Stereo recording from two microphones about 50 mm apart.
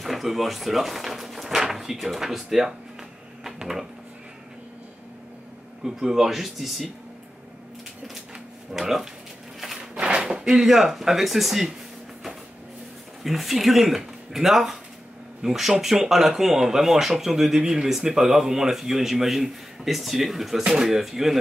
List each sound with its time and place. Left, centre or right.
0.0 s speech: centre
3.4 s a sound: centre
5.9 s speech: centre
8.7 s speech: centre
9.8 s a sound: centre
10.2 s speech: centre
13.2 s speech: centre